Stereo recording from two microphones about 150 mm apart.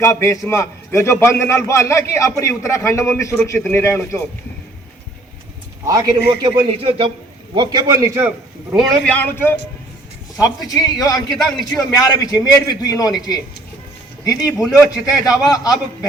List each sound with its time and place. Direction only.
0.0 s a man's voice: 20° left (ahead or behind)
5.8 s a man's voice: 25° right (ahead or behind)
8.7 s a man's voice: centre (ahead or behind)
9.1 s a man's voice: 15° left (ahead or behind)
10.3 s a man's voice: 25° left (ahead or behind)
11.3 s a man's voice: centre (ahead or behind)
11.8 s a man's voice: 25° left (ahead or behind)
14.3 s a man's voice: 5° right (ahead or behind)
15.2 s a man's voice: 25° left (ahead or behind)